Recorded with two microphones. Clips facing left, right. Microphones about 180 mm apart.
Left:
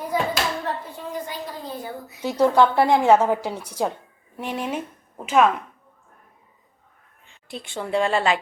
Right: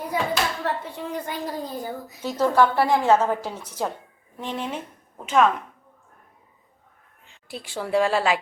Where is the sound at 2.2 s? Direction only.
15° left (ahead or behind).